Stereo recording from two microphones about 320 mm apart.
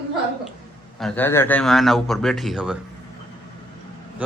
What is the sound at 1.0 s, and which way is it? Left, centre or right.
A man's voice, centre.